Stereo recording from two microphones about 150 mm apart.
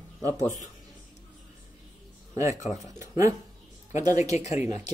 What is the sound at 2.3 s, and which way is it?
Speech, 20° right (ahead or behind).